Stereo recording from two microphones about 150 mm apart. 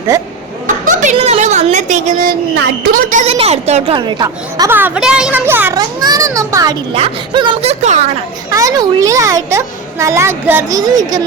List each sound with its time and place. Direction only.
1.1 s a woman's voice: 45° right (ahead or behind); by 3.2 s 65° right (ahead or behind)
3.2 s a woman's voice: 40° right (ahead or behind)
3.9 s a child's voice: 30° right (ahead or behind)
4.7 s a woman's voice: 15° right (ahead or behind)
5.7 s a child's voice: 25° right (ahead or behind)
6.9 s speech: 35° right (ahead or behind)
7.7 s a woman's voice: 50° right (ahead or behind)
8.4 s a child's voice: 20° right (ahead or behind)
10.8 s a child's voice: 25° right (ahead or behind)